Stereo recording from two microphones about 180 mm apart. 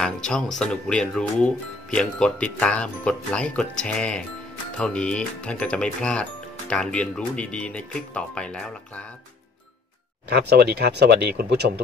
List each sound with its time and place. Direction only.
0.0 s speech: 5° left (ahead or behind)
10.3 s speech: 65° right (ahead or behind)